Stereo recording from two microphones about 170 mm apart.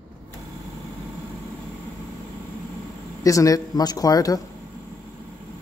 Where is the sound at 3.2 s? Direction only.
20° left (ahead or behind).